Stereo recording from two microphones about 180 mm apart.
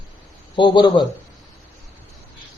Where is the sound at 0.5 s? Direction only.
25° left (ahead or behind).